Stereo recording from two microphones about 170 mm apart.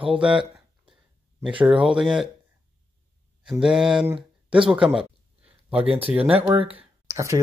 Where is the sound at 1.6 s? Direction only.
5° right (ahead or behind).